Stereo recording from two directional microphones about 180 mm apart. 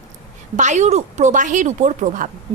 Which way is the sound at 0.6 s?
40° right (ahead or behind).